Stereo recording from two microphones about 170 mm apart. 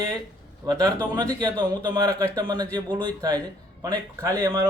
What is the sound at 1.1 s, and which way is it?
A man's voice, 20° right (ahead or behind).